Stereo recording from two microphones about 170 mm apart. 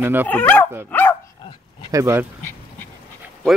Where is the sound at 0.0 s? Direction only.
10° right (ahead or behind).